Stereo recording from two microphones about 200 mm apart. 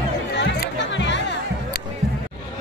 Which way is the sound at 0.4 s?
60° left (ahead or behind).